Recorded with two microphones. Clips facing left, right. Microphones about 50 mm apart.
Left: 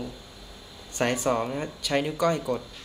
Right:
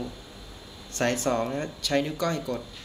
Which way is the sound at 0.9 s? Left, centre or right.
Centre.